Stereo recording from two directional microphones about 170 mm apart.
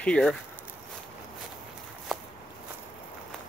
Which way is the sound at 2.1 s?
Centre (ahead or behind).